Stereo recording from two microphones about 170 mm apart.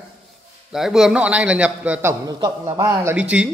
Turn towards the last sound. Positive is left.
turn(degrees=-5)  # may be behind; listen again after turning